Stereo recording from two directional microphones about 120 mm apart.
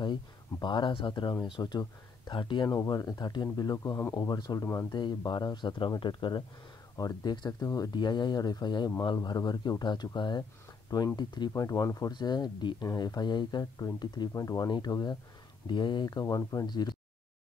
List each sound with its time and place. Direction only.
0.0 s speech: 40° left (ahead or behind)